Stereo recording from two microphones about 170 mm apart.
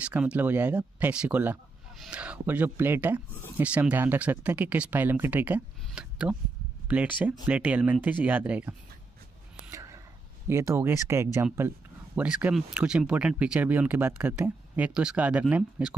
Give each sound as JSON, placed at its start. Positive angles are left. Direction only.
{"t": 0.0, "sound": "speech", "side_deg": -5}
{"t": 9.7, "sound": "whispering", "side_deg": -20}
{"t": 10.5, "sound": "speech", "side_deg": -15}